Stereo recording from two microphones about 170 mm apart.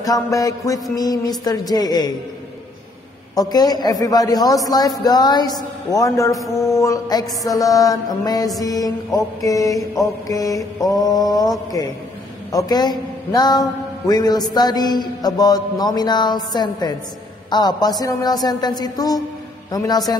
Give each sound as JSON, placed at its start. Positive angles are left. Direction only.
{"t": 0.0, "sound": "a man's voice", "side_deg": 20}
{"t": 3.3, "sound": "a man's voice", "side_deg": 25}